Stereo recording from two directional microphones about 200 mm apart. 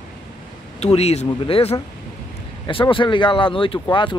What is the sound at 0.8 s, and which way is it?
Speech, 30° left (ahead or behind).